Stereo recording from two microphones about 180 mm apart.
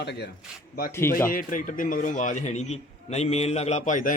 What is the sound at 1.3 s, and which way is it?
A man's voice, 50° left (ahead or behind).